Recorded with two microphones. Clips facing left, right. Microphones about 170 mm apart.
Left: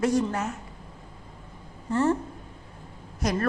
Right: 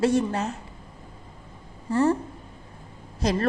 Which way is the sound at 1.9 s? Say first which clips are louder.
Right 2 dB; 15° right (ahead or behind).